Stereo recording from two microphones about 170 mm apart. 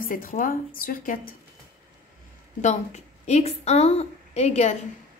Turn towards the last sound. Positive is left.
turn(degrees=40)  # may be behind; listen again after turning